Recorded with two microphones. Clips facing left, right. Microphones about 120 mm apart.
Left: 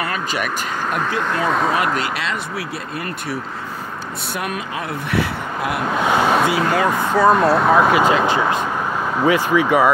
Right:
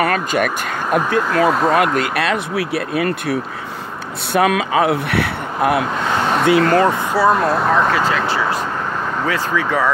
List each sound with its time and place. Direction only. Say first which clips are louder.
0.0 s a sound: right 6 dB; 55° right (ahead or behind)
1.5 s speech: right 3 dB; centre (ahead or behind)
2.0 s speech: right 5 dB; 60° right (ahead or behind)
4.3 s speech: right 11 dB; 90° right; by 5.8 s 65° right (ahead or behind)
5.9 s speech: left 2 dB; 10° left (ahead or behind)